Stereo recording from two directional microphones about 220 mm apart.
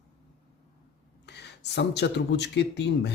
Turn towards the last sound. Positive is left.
turn(degrees=50)  # may be behind; listen again after turning